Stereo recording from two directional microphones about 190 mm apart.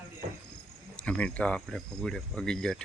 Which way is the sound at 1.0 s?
5° left (ahead or behind).